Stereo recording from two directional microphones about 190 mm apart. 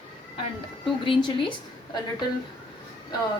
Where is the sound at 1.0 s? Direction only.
25° left (ahead or behind).